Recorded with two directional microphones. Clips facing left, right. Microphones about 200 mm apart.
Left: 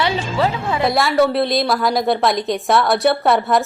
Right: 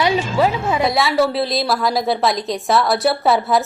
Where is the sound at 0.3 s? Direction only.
20° right (ahead or behind).